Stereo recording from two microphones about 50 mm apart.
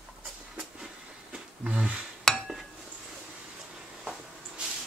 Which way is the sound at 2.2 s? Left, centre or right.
Centre.